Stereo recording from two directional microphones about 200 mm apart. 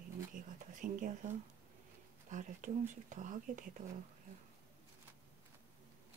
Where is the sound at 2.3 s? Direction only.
40° right (ahead or behind).